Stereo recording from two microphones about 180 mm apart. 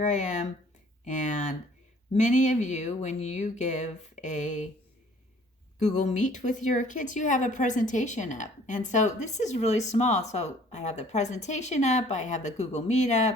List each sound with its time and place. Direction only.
0.0 s a woman's voice: 40° left (ahead or behind)
5.8 s a woman's voice: 40° left (ahead or behind)